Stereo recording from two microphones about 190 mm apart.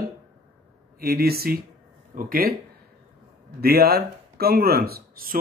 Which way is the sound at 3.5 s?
55° right (ahead or behind).